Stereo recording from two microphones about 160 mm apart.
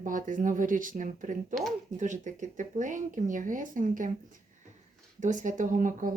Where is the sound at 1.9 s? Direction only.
50° right (ahead or behind).